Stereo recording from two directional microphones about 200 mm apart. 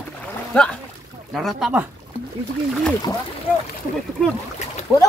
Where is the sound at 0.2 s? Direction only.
5° left (ahead or behind).